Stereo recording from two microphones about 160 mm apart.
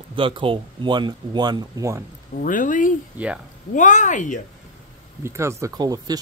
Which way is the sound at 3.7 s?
50° left (ahead or behind).